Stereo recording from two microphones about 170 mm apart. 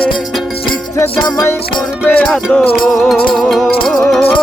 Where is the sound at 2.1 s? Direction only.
5° left (ahead or behind).